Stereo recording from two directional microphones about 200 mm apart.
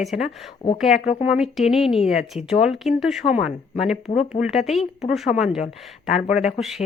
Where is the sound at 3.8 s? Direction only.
35° left (ahead or behind).